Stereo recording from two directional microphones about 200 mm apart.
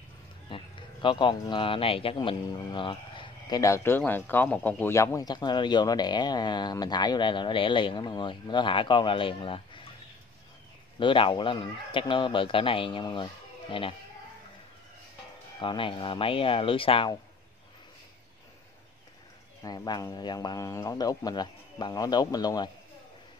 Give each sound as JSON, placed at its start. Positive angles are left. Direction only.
{"t": 0.5, "sound": "speech", "side_deg": 25}
{"t": 11.0, "sound": "speech", "side_deg": 25}
{"t": 15.6, "sound": "speech", "side_deg": 25}
{"t": 19.6, "sound": "speech", "side_deg": 20}